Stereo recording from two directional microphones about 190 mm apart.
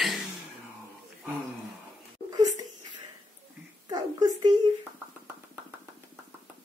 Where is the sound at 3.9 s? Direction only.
20° right (ahead or behind).